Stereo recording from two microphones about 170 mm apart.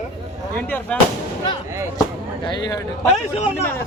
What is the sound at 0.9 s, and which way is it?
Speech, 5° left (ahead or behind).